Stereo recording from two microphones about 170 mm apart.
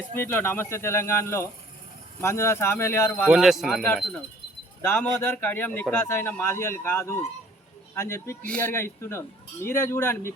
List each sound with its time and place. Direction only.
0.2 s a man's voice: 10° left (ahead or behind)
3.2 s a man's voice: centre (ahead or behind); by 10.3 s 15° left (ahead or behind)